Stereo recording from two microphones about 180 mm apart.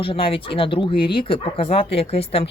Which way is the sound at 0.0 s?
30° left (ahead or behind).